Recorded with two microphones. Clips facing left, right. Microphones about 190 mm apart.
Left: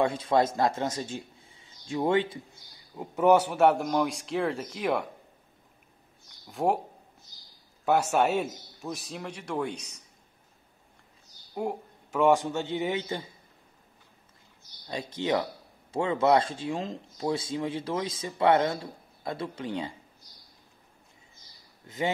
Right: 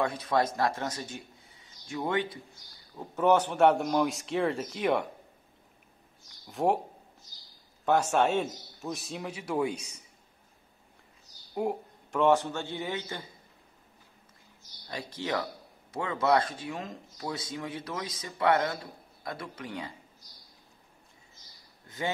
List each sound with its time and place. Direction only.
0.0 s a man's voice: 25° left (ahead or behind)
3.0 s a man's voice: 10° left (ahead or behind)
6.4 s a man's voice: centre (ahead or behind)
7.8 s a man's voice: 10° left (ahead or behind); by 10.0 s 10° right (ahead or behind)
11.5 s a sound: centre (ahead or behind)
12.2 s speech: 15° left (ahead or behind)
14.9 s speech: 20° left (ahead or behind)
21.8 s speech: 25° left (ahead or behind)